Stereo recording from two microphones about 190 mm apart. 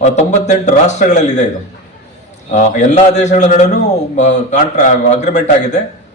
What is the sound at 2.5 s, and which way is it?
Speech, 40° left (ahead or behind).